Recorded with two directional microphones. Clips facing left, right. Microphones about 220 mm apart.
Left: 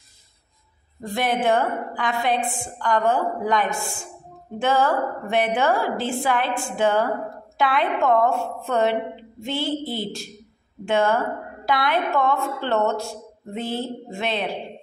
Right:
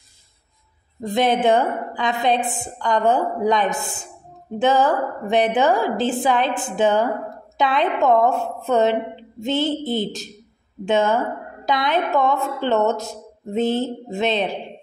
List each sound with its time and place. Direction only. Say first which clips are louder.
1.0 s a woman's voice: right 4 dB; 20° right (ahead or behind)